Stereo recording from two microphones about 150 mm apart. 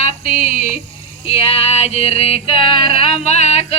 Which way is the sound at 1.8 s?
45° left (ahead or behind).